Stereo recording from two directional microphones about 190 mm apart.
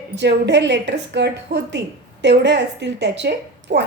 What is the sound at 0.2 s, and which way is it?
A woman's voice, 65° right (ahead or behind).